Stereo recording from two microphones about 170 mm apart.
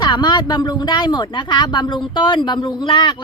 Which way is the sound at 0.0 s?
25° left (ahead or behind).